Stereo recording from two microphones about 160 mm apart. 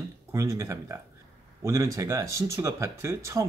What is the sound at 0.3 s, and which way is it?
Speech, 20° right (ahead or behind).